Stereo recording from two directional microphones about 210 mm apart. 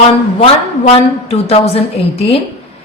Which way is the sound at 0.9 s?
30° left (ahead or behind).